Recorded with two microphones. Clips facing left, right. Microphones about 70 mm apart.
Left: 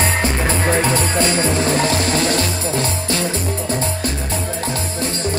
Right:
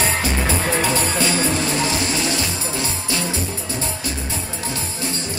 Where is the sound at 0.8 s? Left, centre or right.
Left.